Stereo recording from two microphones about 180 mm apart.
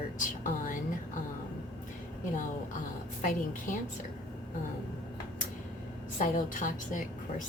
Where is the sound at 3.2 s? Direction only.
45° left (ahead or behind).